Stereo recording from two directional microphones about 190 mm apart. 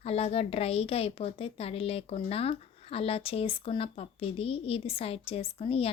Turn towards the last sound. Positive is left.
turn(degrees=30)  # may be behind; listen again after turning